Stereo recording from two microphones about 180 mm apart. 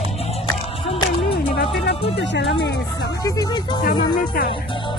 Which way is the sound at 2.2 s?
70° left (ahead or behind).